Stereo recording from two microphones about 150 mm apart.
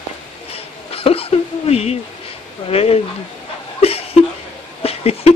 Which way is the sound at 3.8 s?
40° left (ahead or behind).